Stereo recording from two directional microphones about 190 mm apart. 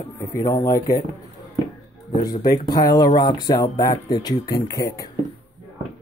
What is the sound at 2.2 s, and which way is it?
Speech, 20° left (ahead or behind).